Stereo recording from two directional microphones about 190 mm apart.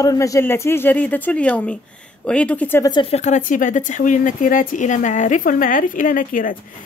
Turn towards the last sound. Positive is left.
turn(degrees=45)  # may be behind; listen again after turning